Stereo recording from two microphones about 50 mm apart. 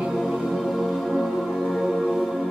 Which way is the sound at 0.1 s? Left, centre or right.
Centre.